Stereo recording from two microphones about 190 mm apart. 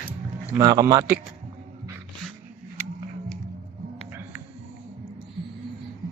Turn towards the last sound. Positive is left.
turn(degrees=-10)  # may be behind; listen again after turning